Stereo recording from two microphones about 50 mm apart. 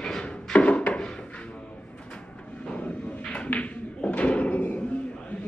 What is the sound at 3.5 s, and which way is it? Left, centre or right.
Tap, left.